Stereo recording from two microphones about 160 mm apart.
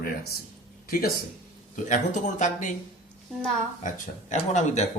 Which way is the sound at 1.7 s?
50° left (ahead or behind).